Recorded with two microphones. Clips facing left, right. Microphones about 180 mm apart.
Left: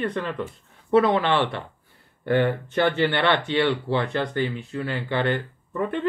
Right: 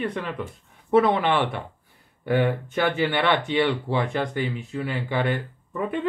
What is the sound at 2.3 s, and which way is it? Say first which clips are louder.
Speech: left 1 dB; 10° right (ahead or behind).